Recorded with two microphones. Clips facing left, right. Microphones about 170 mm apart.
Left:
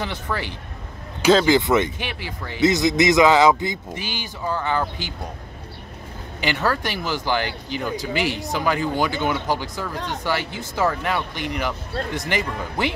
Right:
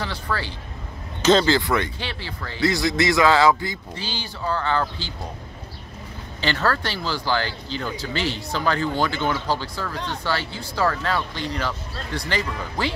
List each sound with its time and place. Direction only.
0.0 s speech: 20° left (ahead or behind)
6.4 s speech: 15° left (ahead or behind)